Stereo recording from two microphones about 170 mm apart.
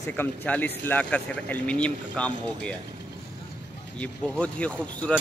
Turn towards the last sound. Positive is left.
turn(degrees=5)  # may be behind; listen again after turning